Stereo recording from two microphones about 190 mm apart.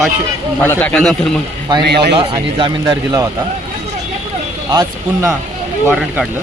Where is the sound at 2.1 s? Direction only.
25° right (ahead or behind).